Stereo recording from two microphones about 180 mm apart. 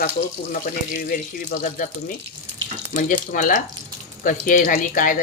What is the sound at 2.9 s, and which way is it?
Speech, 45° left (ahead or behind).